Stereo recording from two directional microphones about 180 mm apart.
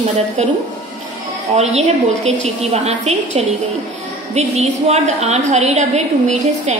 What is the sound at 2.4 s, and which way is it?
A woman's voice, 35° right (ahead or behind).